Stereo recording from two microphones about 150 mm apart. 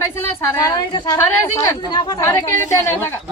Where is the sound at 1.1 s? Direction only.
15° left (ahead or behind).